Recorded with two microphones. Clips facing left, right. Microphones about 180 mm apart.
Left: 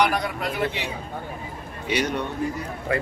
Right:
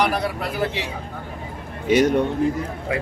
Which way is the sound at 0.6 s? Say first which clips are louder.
Right 3 dB; 30° right (ahead or behind).